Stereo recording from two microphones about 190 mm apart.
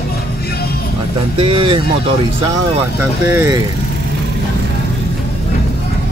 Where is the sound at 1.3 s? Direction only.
30° right (ahead or behind).